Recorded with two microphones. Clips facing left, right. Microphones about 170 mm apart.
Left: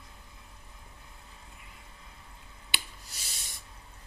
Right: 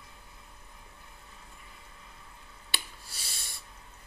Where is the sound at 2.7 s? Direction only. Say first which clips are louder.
Even; 15° left (ahead or behind).